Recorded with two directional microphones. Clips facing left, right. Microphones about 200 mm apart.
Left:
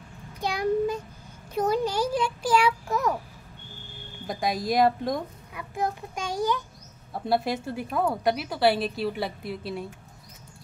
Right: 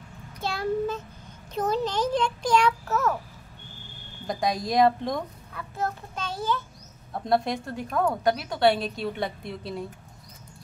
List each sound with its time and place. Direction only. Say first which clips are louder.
0.4 s child singing: left 2 dB; 15° left (ahead or behind)
1.5 s a child's voice: left 1 dB; 10° left (ahead or behind)
4.3 s a woman's voice: even; centre (ahead or behind)
5.5 s a child's voice: left 2 dB; 15° left (ahead or behind)